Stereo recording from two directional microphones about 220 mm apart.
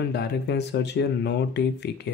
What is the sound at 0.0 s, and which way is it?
Speech, 50° left (ahead or behind).